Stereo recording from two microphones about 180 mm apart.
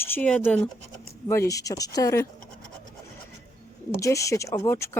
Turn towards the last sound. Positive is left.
turn(degrees=15)  # may be behind; listen again after turning